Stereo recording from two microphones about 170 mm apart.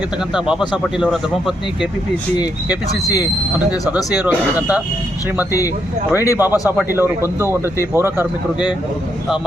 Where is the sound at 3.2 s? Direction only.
10° right (ahead or behind).